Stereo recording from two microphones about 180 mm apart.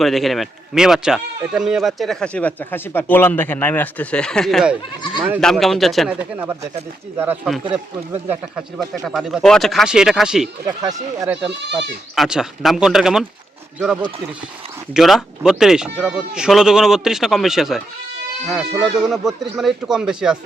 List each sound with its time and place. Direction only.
0.0 s speech: centre (ahead or behind)
9.0 s speech: centre (ahead or behind)
10.7 s speech: 20° right (ahead or behind)
11.3 s speech: 5° right (ahead or behind)